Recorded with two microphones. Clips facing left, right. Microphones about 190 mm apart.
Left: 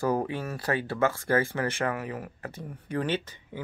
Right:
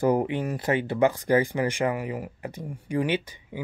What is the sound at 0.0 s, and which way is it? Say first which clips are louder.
Speech: right 4 dB; 20° right (ahead or behind).